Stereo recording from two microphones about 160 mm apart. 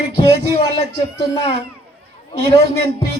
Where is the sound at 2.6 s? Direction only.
40° left (ahead or behind).